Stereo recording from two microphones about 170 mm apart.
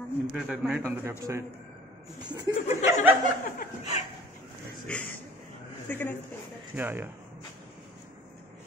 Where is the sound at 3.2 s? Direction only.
50° left (ahead or behind).